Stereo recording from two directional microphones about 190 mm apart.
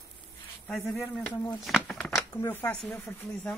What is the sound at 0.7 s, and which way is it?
Speech, centre (ahead or behind).